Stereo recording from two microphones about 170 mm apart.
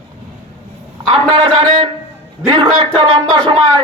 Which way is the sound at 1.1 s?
35° right (ahead or behind).